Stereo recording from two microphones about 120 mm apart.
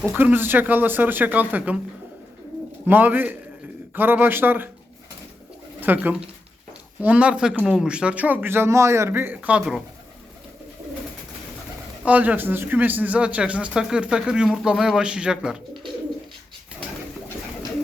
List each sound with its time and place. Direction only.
0.1 s speech: 15° right (ahead or behind)
2.8 s speech: 15° right (ahead or behind)
5.8 s speech: 15° right (ahead or behind)
12.0 s speech: 10° right (ahead or behind)